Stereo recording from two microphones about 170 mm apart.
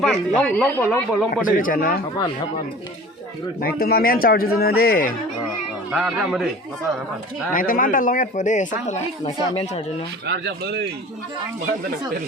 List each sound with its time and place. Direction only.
0.0 s speech: 5° left (ahead or behind)
1.3 s speech: 55° left (ahead or behind)
3.6 s speech: 65° left (ahead or behind)
5.9 s speech: 5° right (ahead or behind)
7.5 s speech: 55° left (ahead or behind)
9.2 s speech: 35° left (ahead or behind)
10.2 s speech: 75° right (ahead or behind)